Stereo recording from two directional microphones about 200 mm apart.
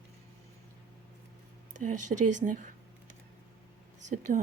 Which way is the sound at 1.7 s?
40° right (ahead or behind).